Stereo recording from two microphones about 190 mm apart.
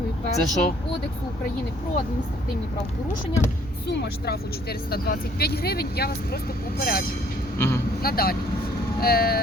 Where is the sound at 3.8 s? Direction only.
60° left (ahead or behind).